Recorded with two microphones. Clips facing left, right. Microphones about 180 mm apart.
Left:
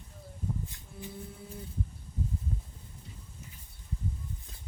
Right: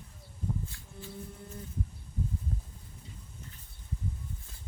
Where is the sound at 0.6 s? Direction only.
15° left (ahead or behind).